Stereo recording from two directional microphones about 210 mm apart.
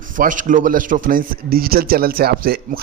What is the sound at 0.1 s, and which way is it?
A man's voice, 40° right (ahead or behind).